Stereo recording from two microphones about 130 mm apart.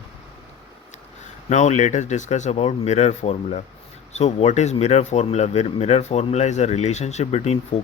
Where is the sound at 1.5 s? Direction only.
60° left (ahead or behind).